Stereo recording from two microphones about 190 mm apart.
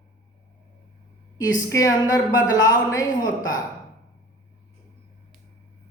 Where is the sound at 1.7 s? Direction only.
20° left (ahead or behind).